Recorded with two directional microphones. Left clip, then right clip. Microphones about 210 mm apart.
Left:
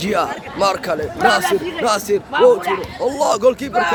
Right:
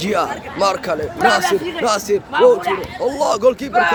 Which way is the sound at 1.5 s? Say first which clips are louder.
Even; 50° right (ahead or behind).